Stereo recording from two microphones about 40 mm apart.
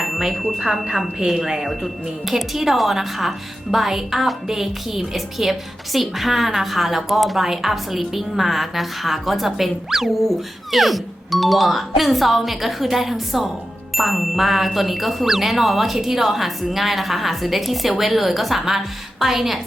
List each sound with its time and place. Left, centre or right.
0.0 s a woman's voice: centre